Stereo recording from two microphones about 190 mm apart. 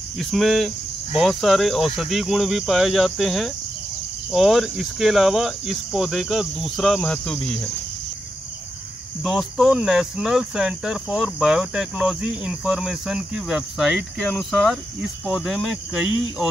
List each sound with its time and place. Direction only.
0.2 s cricket: centre (ahead or behind)
9.2 s cricket: centre (ahead or behind)